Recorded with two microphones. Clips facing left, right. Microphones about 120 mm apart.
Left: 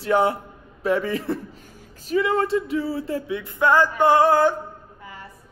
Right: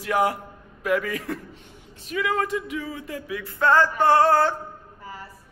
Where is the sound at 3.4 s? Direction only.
15° left (ahead or behind).